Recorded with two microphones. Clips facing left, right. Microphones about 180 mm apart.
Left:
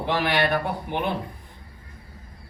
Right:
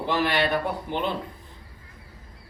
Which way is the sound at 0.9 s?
15° left (ahead or behind).